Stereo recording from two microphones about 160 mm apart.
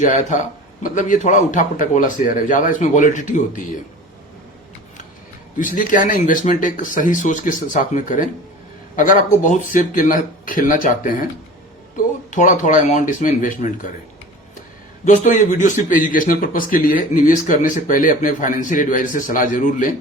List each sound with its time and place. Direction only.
0.0 s a man's voice: 50° left (ahead or behind)
5.5 s a man's voice: 55° left (ahead or behind)
12.3 s a man's voice: 50° left (ahead or behind)
15.0 s a man's voice: 50° left (ahead or behind)